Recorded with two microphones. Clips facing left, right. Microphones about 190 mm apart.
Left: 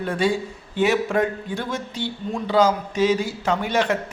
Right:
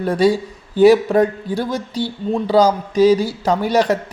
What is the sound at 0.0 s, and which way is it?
Speech, 40° right (ahead or behind).